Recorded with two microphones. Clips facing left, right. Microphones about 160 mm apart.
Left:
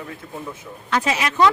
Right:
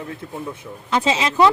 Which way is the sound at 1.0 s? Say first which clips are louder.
Right 3 dB; 25° right (ahead or behind).